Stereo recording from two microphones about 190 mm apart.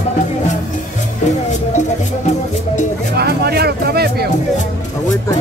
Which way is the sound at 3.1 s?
55° right (ahead or behind).